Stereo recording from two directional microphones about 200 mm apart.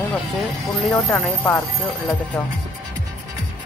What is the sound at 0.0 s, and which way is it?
Speech, 5° left (ahead or behind).